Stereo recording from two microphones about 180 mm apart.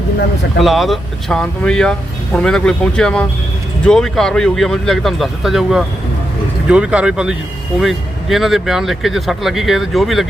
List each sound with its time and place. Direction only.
0.6 s speech: centre (ahead or behind)